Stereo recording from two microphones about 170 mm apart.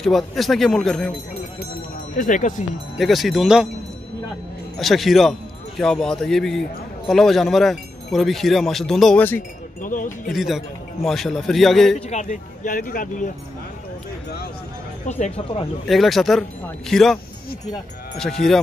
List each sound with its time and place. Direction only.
0.0 s speech: centre (ahead or behind)
2.1 s speech: 50° left (ahead or behind)
3.0 s speech: centre (ahead or behind)
4.7 s speech: centre (ahead or behind)
9.8 s speech: 50° left (ahead or behind)
10.3 s speech: centre (ahead or behind)
12.1 s speech: 45° left (ahead or behind)
15.0 s speech: 40° left (ahead or behind)
15.9 s speech: centre (ahead or behind)
18.4 s speech: centre (ahead or behind)